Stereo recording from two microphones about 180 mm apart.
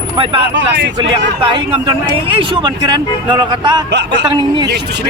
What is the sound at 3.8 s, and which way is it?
Speech, 75° right (ahead or behind).